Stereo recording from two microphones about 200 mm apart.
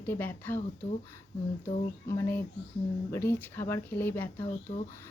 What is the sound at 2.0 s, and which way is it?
Speech, 10° left (ahead or behind).